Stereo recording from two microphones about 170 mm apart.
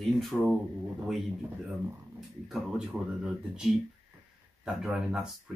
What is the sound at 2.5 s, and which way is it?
Speech, 5° right (ahead or behind).